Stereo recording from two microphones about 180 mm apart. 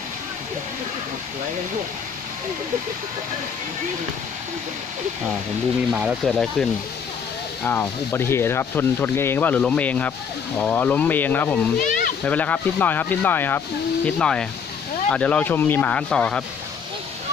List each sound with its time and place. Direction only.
5.8 s speech: 5° right (ahead or behind)
7.6 s speech: 10° left (ahead or behind)
11.8 s a sound: 45° left (ahead or behind)
12.3 s speech: 10° left (ahead or behind)